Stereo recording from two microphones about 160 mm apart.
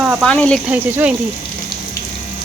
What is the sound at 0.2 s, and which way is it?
Speech, 5° left (ahead or behind).